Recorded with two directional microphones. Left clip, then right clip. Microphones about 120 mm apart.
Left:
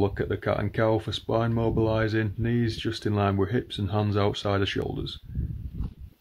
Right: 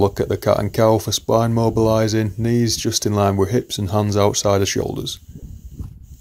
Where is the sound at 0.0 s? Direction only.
40° right (ahead or behind).